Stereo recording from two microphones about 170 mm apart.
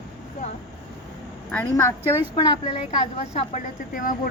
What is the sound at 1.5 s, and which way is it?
Speech, 15° left (ahead or behind).